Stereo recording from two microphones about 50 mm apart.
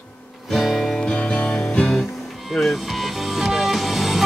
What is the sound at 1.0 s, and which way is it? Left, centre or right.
Music, left.